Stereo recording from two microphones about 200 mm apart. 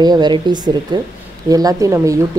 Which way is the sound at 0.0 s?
20° right (ahead or behind).